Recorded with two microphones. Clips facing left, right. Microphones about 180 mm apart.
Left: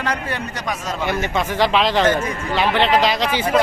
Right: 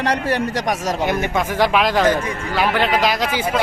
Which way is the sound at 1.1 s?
15° right (ahead or behind).